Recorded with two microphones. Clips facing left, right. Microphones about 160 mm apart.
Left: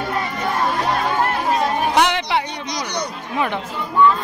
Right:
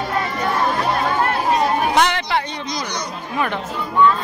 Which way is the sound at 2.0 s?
15° left (ahead or behind).